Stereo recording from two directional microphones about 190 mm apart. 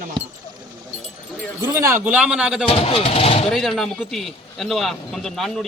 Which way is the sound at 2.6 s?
30° left (ahead or behind).